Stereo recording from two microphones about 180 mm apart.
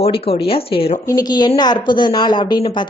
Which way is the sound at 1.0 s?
20° left (ahead or behind).